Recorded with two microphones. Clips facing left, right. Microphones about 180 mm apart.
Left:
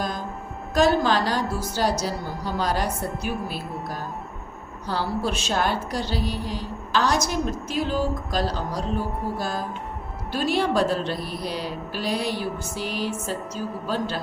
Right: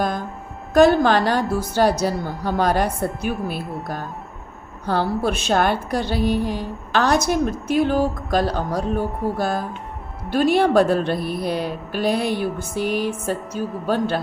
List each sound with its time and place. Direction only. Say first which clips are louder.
0.7 s a woman's voice: right 6 dB; 55° right (ahead or behind)